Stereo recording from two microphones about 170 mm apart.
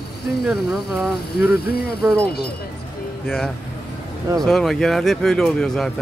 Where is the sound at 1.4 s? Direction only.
65° left (ahead or behind).